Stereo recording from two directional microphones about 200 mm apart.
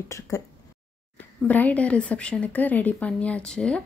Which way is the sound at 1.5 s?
5° left (ahead or behind).